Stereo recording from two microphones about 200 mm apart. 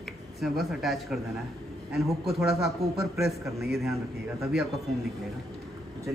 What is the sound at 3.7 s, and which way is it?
Speech, centre (ahead or behind).